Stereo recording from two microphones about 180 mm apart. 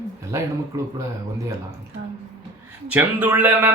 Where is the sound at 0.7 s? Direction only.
20° right (ahead or behind).